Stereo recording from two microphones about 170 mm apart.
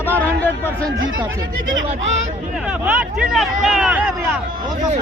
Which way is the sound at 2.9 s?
5° right (ahead or behind).